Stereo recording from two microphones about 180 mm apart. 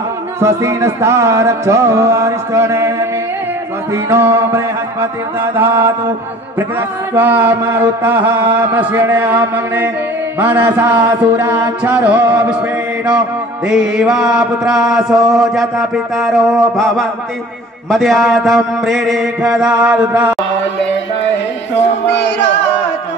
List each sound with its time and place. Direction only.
0.4 s mantra: 15° right (ahead or behind)
4.1 s mantra: 15° right (ahead or behind)
7.2 s mantra: 10° right (ahead or behind)
13.7 s mantra: 5° right (ahead or behind)
22.0 s a sound: 75° left (ahead or behind)